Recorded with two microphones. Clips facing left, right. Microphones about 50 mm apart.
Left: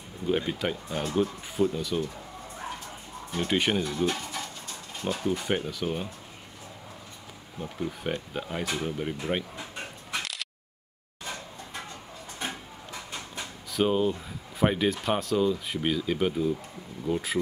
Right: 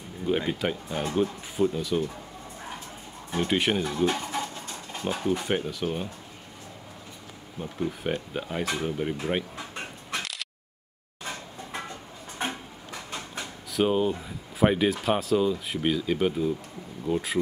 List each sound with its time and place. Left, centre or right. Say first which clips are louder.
0.6 s speech: right 1 dB; centre
3.3 s speech: right 1 dB; centre
4.0 s speech: right 3 dB; right
5.0 s speech: right 1 dB; centre
7.6 s speech: right 2 dB; centre
12.4 s a sound: right 4 dB; right
13.4 s speech: right 1 dB; centre